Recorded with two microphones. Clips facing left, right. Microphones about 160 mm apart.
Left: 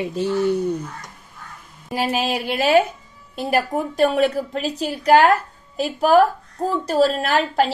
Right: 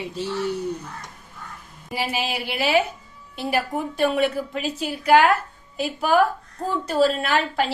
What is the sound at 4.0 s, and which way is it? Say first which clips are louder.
A woman's voice: left 3 dB; 40° left (ahead or behind).